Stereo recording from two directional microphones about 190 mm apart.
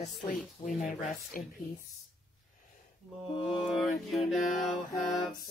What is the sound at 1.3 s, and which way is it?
Speech, 45° left (ahead or behind).